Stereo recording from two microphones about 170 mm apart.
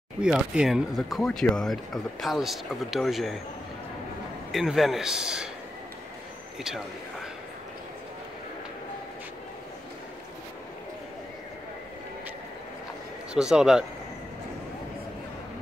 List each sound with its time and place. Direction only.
0.2 s speech: 5° right (ahead or behind)
4.5 s speech: centre (ahead or behind)
13.3 s speech: 5° right (ahead or behind)